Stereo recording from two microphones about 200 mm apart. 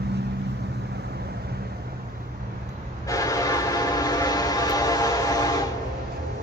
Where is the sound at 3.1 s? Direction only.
15° left (ahead or behind).